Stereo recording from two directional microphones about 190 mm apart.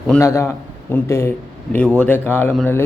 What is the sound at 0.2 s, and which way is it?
Speech, 15° left (ahead or behind).